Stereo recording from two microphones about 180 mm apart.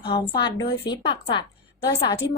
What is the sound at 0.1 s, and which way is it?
A woman's voice, 25° left (ahead or behind).